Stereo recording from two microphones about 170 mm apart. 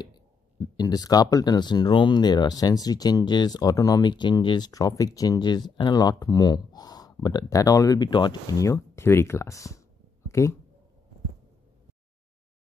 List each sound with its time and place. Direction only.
0.7 s speech: 25° left (ahead or behind)
10.2 s cat: 15° left (ahead or behind)